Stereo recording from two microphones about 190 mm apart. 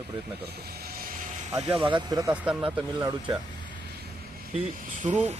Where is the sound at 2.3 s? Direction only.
5° right (ahead or behind).